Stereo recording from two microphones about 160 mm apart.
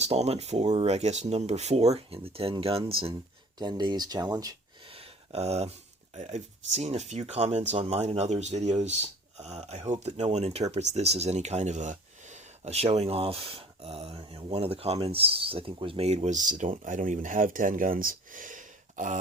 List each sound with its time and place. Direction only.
0.0 s speech: 40° right (ahead or behind); by 4.5 s 25° right (ahead or behind)
4.9 s a sound: 35° right (ahead or behind)
6.1 s speech: 45° right (ahead or behind)